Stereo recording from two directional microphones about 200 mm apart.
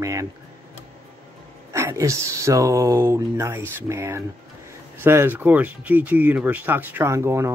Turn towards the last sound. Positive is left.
turn(degrees=-15)  # may be behind; listen again after turning